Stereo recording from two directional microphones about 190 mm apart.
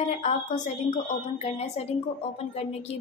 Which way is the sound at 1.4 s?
35° left (ahead or behind).